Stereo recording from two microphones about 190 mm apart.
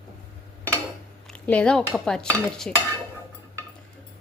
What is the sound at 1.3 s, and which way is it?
Stir, 5° left (ahead or behind).